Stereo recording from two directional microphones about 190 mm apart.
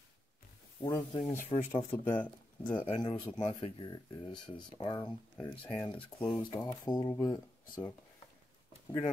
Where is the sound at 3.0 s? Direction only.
20° left (ahead or behind).